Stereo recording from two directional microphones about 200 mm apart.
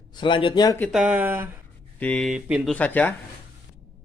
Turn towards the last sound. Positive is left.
turn(degrees=10)  # may be behind; listen again after turning